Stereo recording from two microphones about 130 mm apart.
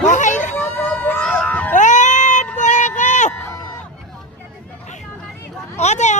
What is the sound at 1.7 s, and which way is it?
Cat, 70° left (ahead or behind).